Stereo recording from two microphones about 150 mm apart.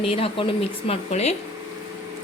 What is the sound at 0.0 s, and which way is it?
A woman's voice, 40° left (ahead or behind).